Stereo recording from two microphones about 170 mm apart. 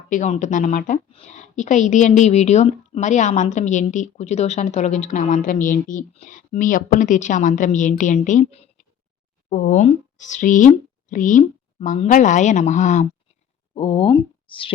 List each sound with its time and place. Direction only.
0.1 s a woman's voice: 45° left (ahead or behind)
9.5 s a woman's voice: 50° left (ahead or behind)
13.7 s speech: 30° left (ahead or behind)